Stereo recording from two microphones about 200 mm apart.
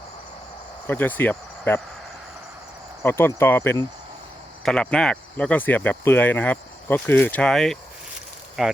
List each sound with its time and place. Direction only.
0.9 s speech: 10° left (ahead or behind)
3.0 s speech: 10° left (ahead or behind)